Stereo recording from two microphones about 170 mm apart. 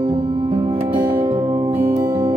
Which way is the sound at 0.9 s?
20° right (ahead or behind).